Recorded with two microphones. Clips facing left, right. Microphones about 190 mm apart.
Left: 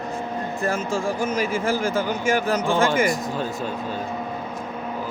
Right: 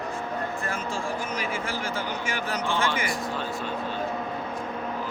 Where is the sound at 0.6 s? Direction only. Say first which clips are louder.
Left 7 dB; 40° left (ahead or behind).